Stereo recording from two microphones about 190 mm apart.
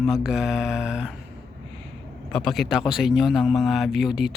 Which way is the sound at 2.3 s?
Centre (ahead or behind).